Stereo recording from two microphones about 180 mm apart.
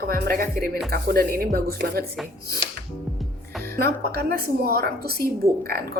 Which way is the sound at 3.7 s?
60° right (ahead or behind).